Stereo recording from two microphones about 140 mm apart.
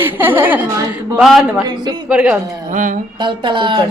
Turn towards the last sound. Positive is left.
turn(degrees=-35)  # may be behind; listen again after turning